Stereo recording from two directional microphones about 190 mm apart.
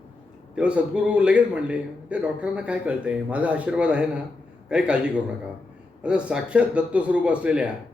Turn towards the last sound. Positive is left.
turn(degrees=-5)  # may be behind; listen again after turning